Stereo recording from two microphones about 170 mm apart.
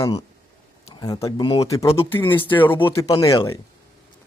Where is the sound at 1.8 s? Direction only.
35° left (ahead or behind).